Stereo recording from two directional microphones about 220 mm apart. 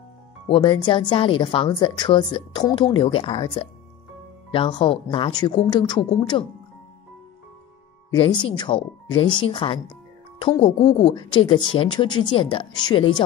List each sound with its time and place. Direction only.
0.5 s a woman's voice: 25° left (ahead or behind)
8.1 s a woman's voice: 20° left (ahead or behind)